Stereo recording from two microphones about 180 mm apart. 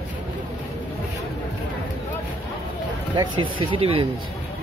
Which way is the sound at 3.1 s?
25° right (ahead or behind).